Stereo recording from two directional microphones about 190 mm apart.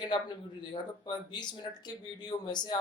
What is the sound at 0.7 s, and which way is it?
Speech, 25° left (ahead or behind).